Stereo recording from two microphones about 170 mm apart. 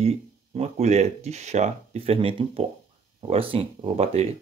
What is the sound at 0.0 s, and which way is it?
Speech, 40° right (ahead or behind).